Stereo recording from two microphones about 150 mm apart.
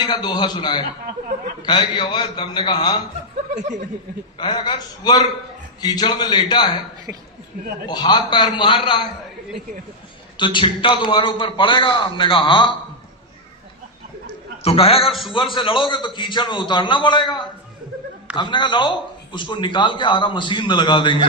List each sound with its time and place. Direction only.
0.0 s a man's voice: 30° left (ahead or behind)
3.5 s speech: 55° right (ahead or behind)
4.4 s a man's voice: 30° left (ahead or behind)
7.1 s speech: 15° right (ahead or behind)
7.9 s a man's voice: 30° left (ahead or behind)
10.3 s a man's voice: 30° left (ahead or behind)
14.6 s a man's voice: 40° left (ahead or behind)